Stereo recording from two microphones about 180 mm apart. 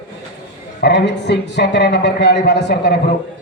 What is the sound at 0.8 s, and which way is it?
A man's voice, 75° left (ahead or behind).